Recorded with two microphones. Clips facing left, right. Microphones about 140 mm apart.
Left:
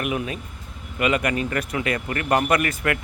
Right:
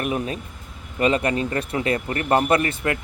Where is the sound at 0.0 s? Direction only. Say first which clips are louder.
Right 1 dB; 35° right (ahead or behind).